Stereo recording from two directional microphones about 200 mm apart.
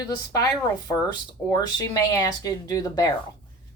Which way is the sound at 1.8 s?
20° left (ahead or behind).